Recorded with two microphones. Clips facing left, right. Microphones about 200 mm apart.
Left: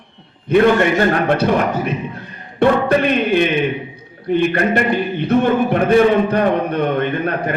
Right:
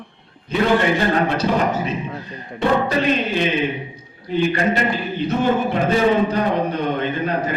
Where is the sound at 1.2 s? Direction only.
60° left (ahead or behind).